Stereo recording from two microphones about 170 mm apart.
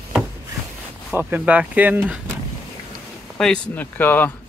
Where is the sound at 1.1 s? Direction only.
10° right (ahead or behind).